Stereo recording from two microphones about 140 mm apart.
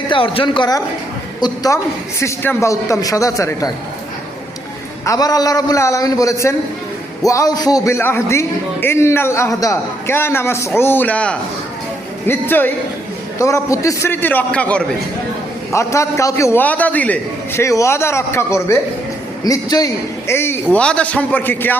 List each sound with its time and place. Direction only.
0.1 s a man's voice: 40° left (ahead or behind)
5.0 s a man's voice: 25° left (ahead or behind); by 14.8 s 10° left (ahead or behind)
15.7 s a man's voice: 20° left (ahead or behind)